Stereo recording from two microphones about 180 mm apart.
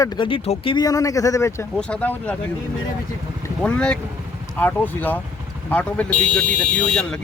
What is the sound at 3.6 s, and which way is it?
Speech, 5° left (ahead or behind).